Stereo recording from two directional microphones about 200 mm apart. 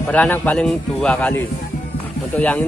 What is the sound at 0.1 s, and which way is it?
Speech, 5° left (ahead or behind).